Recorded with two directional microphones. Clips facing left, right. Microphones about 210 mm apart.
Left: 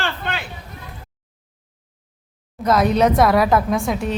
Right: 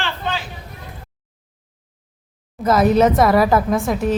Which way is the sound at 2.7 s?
5° right (ahead or behind).